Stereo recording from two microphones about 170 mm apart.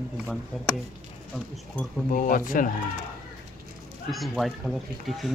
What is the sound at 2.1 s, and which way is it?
Speech, 50° left (ahead or behind).